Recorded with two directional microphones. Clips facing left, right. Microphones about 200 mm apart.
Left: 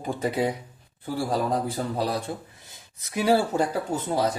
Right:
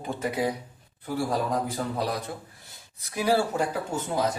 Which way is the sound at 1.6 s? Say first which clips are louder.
Left 2 dB; 30° left (ahead or behind).